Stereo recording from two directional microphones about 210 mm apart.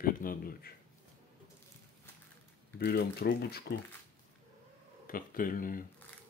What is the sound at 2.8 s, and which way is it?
Speech, 45° left (ahead or behind).